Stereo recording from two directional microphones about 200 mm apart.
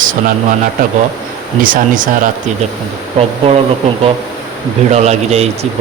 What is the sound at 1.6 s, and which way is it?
Speech, 45° right (ahead or behind).